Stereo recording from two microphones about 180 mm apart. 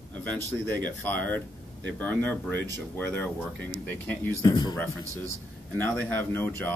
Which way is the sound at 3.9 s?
10° left (ahead or behind).